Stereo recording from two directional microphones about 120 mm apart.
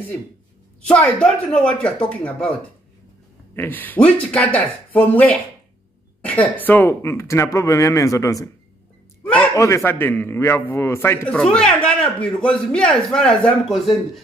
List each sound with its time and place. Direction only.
0.8 s speech: 10° left (ahead or behind)
3.5 s speech: 15° left (ahead or behind)
6.2 s a sound: 10° left (ahead or behind)
6.6 s a man's voice: 15° left (ahead or behind)
9.2 s a sound: 10° left (ahead or behind)
9.5 s a man's voice: 25° left (ahead or behind)
11.3 s speech: 5° left (ahead or behind)